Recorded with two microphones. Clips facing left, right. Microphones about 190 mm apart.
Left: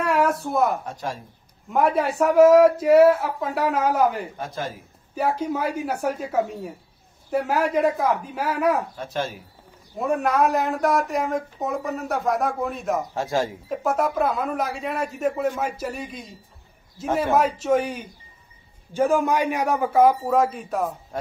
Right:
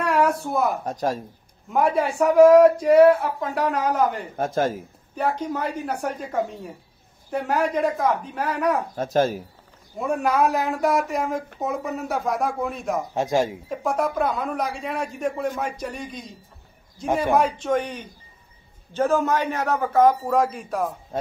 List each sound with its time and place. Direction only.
0.0 s a sound: centre (ahead or behind)
0.8 s speech: 40° right (ahead or behind)
1.7 s speech: centre (ahead or behind)
4.4 s speech: 45° right (ahead or behind)
5.1 s a man's voice: 5° left (ahead or behind)
8.9 s speech: 40° right (ahead or behind)
9.9 s speech: centre (ahead or behind)
13.1 s speech: 15° right (ahead or behind)
13.7 s a man's voice: centre (ahead or behind)
21.1 s a man's voice: 25° right (ahead or behind)